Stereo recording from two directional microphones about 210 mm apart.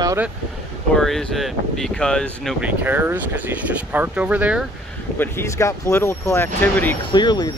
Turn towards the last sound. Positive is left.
turn(degrees=20)  # may be behind; listen again after turning